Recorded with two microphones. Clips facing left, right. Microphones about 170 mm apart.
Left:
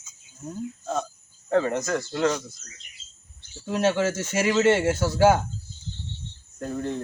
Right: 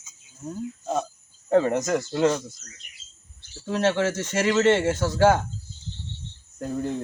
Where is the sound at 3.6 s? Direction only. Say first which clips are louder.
Even; 10° left (ahead or behind).